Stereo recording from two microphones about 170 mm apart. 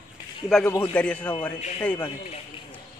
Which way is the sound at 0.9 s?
5° left (ahead or behind).